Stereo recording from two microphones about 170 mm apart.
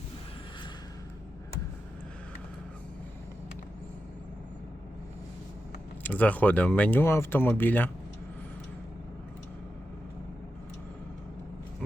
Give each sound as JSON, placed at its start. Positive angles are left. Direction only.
{"t": 6.0, "sound": "speech", "side_deg": 10}